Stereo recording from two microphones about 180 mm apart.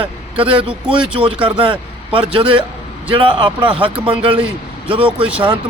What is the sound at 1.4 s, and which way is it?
Speech, 30° right (ahead or behind).